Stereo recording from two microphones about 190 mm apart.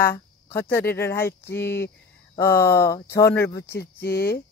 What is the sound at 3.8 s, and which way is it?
Speech, 55° left (ahead or behind).